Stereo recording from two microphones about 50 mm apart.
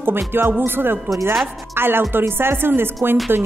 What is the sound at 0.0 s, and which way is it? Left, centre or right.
Speech, right.